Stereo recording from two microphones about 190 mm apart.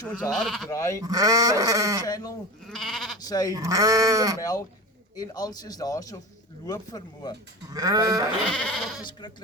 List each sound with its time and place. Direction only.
0.2 s speech: centre (ahead or behind)
0.7 s speech: 15° left (ahead or behind)
1.0 s sheep: 20° right (ahead or behind)
2.0 s a man's voice: 20° left (ahead or behind)
2.6 s goat: centre (ahead or behind)
3.2 s a man's voice: 20° left (ahead or behind)
3.5 s sheep: 15° right (ahead or behind)
4.4 s a man's voice: 15° left (ahead or behind)
7.7 s sheep: 20° right (ahead or behind)
8.4 s speech: 5° left (ahead or behind)
9.0 s a man's voice: 25° left (ahead or behind)